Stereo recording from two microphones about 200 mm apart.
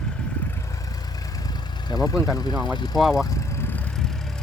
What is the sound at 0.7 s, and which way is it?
Vehicle, 15° left (ahead or behind).